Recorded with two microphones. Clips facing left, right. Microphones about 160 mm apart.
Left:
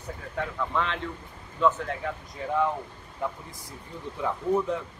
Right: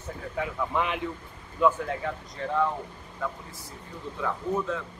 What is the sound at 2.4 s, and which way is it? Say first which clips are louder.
Speech: even; 15° left (ahead or behind).